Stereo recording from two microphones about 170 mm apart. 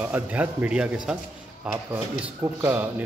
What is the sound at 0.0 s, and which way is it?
A man's voice, 10° right (ahead or behind).